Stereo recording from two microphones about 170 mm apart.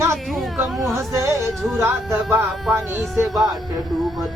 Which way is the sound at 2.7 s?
15° right (ahead or behind).